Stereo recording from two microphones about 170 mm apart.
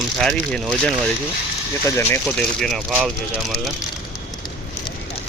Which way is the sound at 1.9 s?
15° left (ahead or behind).